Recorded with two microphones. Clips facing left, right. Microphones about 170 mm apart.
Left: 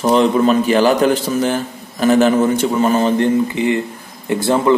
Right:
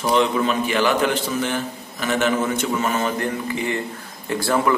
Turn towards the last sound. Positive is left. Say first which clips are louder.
# left 6 dB
turn(degrees=20)  # may be behind; listen again after turning